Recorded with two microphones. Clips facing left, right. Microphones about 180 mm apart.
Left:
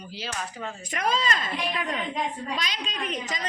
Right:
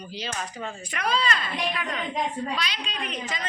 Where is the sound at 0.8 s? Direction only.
45° left (ahead or behind).